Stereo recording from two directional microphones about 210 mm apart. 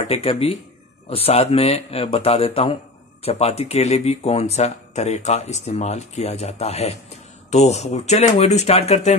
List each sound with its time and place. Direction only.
0.1 s speech: 30° left (ahead or behind)